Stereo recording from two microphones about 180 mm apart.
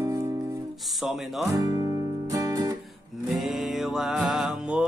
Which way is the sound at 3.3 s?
Centre (ahead or behind).